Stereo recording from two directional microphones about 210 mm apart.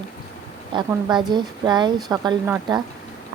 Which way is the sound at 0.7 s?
20° right (ahead or behind).